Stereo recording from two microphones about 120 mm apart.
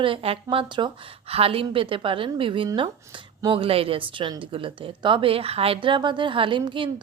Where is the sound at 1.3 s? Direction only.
50° right (ahead or behind).